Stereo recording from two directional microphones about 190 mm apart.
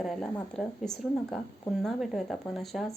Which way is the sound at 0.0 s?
Centre (ahead or behind).